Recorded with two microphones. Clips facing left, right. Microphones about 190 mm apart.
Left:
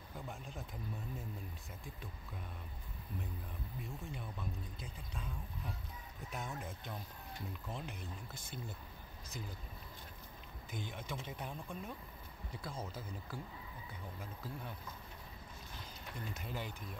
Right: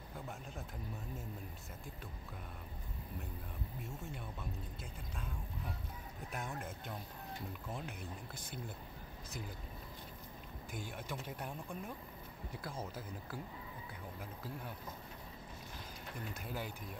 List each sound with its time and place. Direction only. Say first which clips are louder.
6.3 s speech: even; 5° right (ahead or behind)
10.7 s speech: even; 5° right (ahead or behind)
16.4 s speech: right 1 dB; 10° right (ahead or behind)